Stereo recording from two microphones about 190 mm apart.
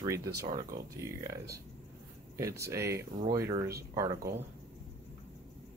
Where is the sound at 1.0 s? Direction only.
15° right (ahead or behind).